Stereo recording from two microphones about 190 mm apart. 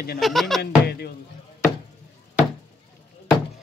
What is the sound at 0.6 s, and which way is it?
Speech, 60° left (ahead or behind).